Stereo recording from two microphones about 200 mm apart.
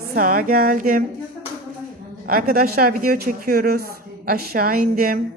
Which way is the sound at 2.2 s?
45° right (ahead or behind).